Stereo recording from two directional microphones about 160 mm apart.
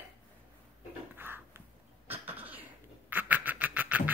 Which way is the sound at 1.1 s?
15° right (ahead or behind).